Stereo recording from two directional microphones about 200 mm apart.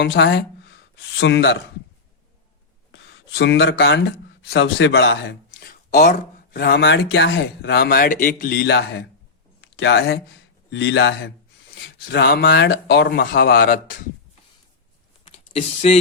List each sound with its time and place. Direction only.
0.0 s speech: 60° left (ahead or behind)
2.9 s speech: 65° left (ahead or behind)
5.9 s speech: 45° left (ahead or behind)
9.6 s a sound: 65° left (ahead or behind)
10.7 s speech: 65° left (ahead or behind)
12.1 s speech: 50° left (ahead or behind)
15.2 s a sound: 30° left (ahead or behind)